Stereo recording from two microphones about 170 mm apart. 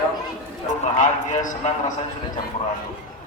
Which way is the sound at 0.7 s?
45° left (ahead or behind).